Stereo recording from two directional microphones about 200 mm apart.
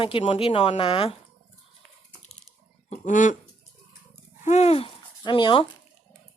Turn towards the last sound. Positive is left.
turn(degrees=25)  # may be behind; listen again after turning